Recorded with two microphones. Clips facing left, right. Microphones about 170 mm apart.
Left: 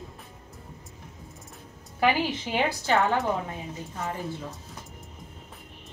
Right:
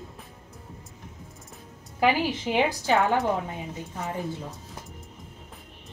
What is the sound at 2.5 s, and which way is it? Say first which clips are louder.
Speech: right 1 dB; 15° right (ahead or behind).